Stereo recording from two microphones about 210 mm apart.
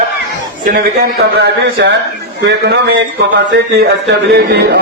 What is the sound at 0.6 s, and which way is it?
A man's voice, 45° right (ahead or behind).